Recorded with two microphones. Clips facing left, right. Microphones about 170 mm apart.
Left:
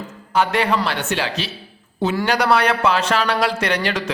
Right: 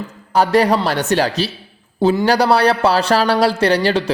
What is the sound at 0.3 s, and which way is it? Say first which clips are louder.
Speech: right 5 dB; 40° right (ahead or behind).